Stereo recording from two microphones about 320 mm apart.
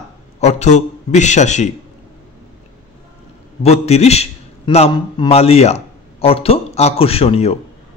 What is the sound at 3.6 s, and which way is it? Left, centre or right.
A man's voice, centre.